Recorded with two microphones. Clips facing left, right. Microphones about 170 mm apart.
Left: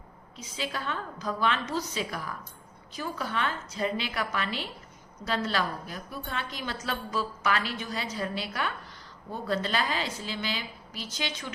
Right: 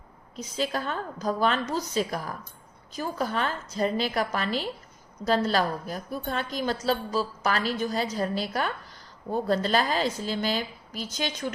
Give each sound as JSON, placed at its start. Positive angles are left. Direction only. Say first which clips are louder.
{"t": 0.3, "sound": "a woman's voice", "louder": "right 6 dB", "side_deg": -40}